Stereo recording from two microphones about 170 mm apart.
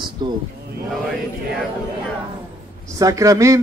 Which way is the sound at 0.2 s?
25° right (ahead or behind).